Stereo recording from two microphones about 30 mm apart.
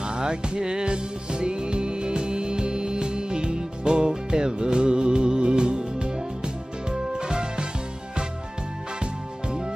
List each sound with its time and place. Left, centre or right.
0.1 s music: right